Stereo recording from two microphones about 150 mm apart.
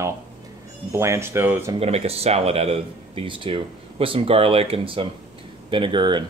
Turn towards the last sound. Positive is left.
turn(degrees=-30)  # may be behind; listen again after turning